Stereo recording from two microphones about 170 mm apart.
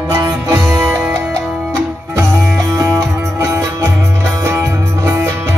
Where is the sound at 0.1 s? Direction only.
15° right (ahead or behind).